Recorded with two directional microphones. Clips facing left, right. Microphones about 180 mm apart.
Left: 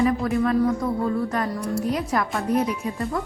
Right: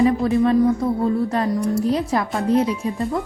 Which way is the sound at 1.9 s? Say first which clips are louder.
Right 4 dB; 30° right (ahead or behind).